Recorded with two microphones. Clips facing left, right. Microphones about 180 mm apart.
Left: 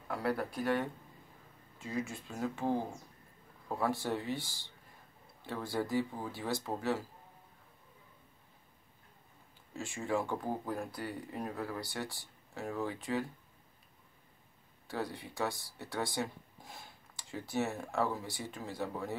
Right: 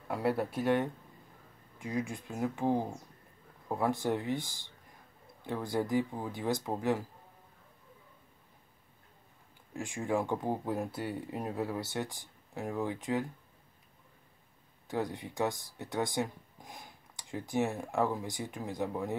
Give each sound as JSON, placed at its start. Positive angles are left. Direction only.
{"t": 0.1, "sound": "speech", "side_deg": -25}
{"t": 9.8, "sound": "speech", "side_deg": -15}
{"t": 14.9, "sound": "speech", "side_deg": -20}